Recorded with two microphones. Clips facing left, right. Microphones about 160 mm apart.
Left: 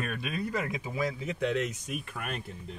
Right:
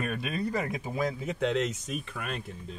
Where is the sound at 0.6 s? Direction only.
45° right (ahead or behind).